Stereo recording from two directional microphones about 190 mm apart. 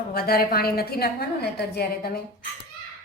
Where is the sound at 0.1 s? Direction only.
55° left (ahead or behind).